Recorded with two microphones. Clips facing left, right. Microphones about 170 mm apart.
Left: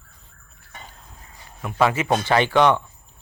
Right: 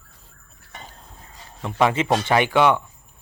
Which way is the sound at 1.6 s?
25° right (ahead or behind).